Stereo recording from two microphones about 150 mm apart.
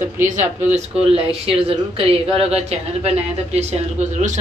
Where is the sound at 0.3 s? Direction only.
55° right (ahead or behind).